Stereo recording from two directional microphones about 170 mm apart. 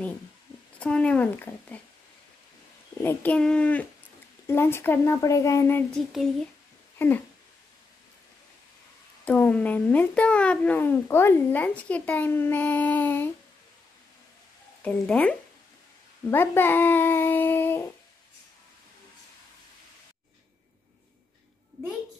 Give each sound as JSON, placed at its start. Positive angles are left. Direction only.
{"t": 0.7, "sound": "speech", "side_deg": 5}
{"t": 3.0, "sound": "speech", "side_deg": 10}
{"t": 7.0, "sound": "speech", "side_deg": 10}
{"t": 9.2, "sound": "speech", "side_deg": 10}
{"t": 14.8, "sound": "speech", "side_deg": 10}